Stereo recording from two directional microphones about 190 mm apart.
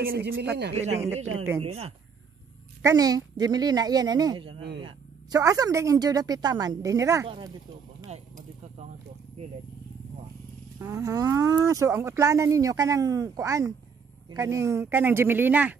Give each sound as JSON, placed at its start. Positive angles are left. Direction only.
{"t": 0.0, "sound": "speech", "side_deg": -50}
{"t": 1.6, "sound": "speech", "side_deg": -35}
{"t": 2.8, "sound": "a woman's voice", "side_deg": -15}
{"t": 7.2, "sound": "a woman's voice", "side_deg": -25}
{"t": 8.1, "sound": "a sound", "side_deg": -35}
{"t": 10.8, "sound": "speech", "side_deg": -15}